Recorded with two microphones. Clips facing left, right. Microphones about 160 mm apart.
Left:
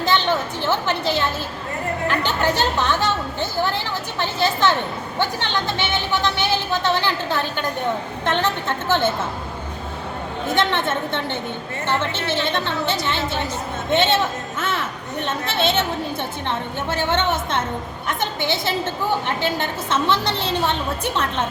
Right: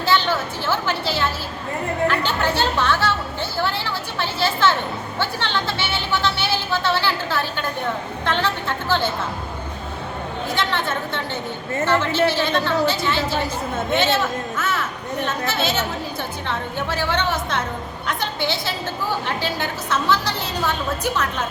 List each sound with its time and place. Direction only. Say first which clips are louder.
0.0 s a sound: even; 20° left (ahead or behind)
2.0 s speech: left 2 dB; 15° left (ahead or behind)
4.2 s a woman's voice: left 1 dB; 20° left (ahead or behind)
10.7 s a woman's voice: left 2 dB; 25° left (ahead or behind)